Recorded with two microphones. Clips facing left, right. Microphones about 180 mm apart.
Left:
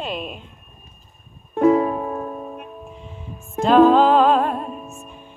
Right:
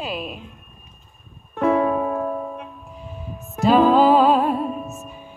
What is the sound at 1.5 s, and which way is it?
Music, 30° left (ahead or behind).